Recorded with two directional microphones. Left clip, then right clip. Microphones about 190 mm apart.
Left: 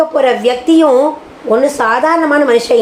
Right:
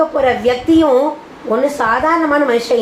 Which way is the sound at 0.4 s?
50° left (ahead or behind).